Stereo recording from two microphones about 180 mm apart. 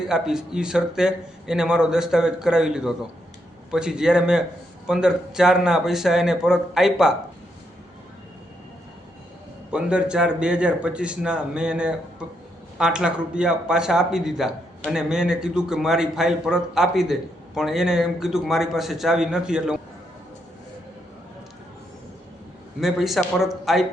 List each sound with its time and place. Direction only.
0.1 s a man's voice: 5° right (ahead or behind)
9.7 s a man's voice: 5° right (ahead or behind)
22.8 s a man's voice: centre (ahead or behind)